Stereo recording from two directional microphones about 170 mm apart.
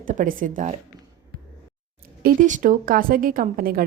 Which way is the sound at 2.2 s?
50° right (ahead or behind).